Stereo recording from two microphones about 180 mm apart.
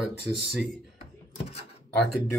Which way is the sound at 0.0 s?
5° right (ahead or behind).